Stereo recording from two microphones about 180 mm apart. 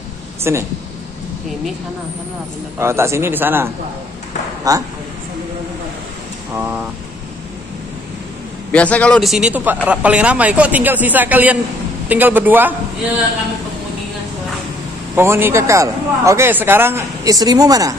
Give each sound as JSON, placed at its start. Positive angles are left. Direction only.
{"t": 0.4, "sound": "speech", "side_deg": -15}
{"t": 2.8, "sound": "a man's voice", "side_deg": -15}
{"t": 6.5, "sound": "a man's voice", "side_deg": -10}
{"t": 8.7, "sound": "a man's voice", "side_deg": 5}
{"t": 15.1, "sound": "a man's voice", "side_deg": -15}